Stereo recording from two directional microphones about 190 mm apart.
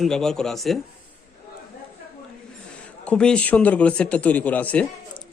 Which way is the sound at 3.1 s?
5° left (ahead or behind).